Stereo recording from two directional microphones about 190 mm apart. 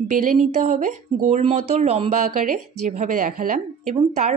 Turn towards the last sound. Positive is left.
turn(degrees=-40)  # may be behind; listen again after turning